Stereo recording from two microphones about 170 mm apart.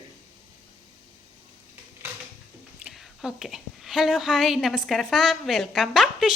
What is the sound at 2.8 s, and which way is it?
A woman's voice, centre (ahead or behind).